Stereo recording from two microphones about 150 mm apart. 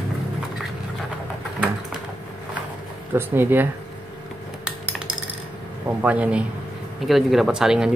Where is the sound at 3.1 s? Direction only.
15° right (ahead or behind).